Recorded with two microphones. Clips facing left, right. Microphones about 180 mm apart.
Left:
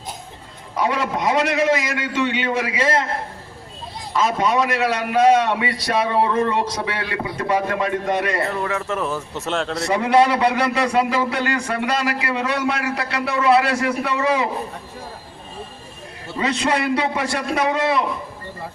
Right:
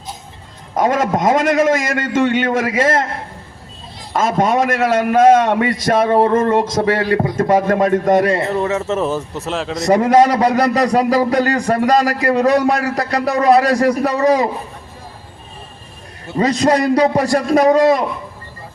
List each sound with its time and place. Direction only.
0.8 s a man's voice: 45° right (ahead or behind)
4.1 s a man's voice: 50° right (ahead or behind)
8.3 s a man's voice: 25° right (ahead or behind)
9.3 s speech: centre (ahead or behind)
9.8 s a man's voice: 40° right (ahead or behind)
16.4 s a man's voice: 40° right (ahead or behind)